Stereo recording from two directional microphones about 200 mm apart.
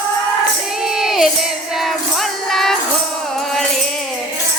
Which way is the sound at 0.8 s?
Centre (ahead or behind).